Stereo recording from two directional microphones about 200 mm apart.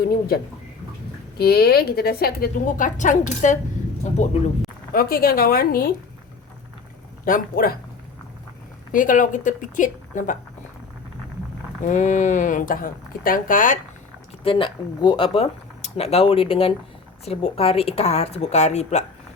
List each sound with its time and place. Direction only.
1.4 s a woman's voice: 50° left (ahead or behind); by 4.3 s 35° left (ahead or behind)
4.9 s a woman's voice: 45° left (ahead or behind)
7.3 s a woman's voice: 45° left (ahead or behind)
8.9 s speech: 40° left (ahead or behind)
11.9 s speech: 35° left (ahead or behind)
14.4 s speech: 25° left (ahead or behind)